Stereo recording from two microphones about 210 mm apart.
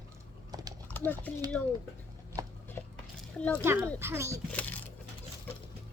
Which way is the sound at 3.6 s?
10° right (ahead or behind).